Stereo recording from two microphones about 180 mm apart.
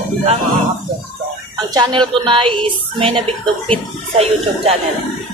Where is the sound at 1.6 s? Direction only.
25° right (ahead or behind).